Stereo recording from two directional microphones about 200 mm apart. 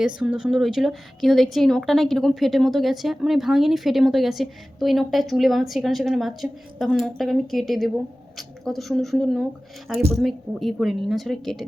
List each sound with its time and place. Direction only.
0.0 s a woman's voice: 5° right (ahead or behind)